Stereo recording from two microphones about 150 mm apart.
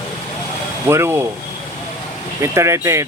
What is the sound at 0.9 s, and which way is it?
Speech, 15° right (ahead or behind).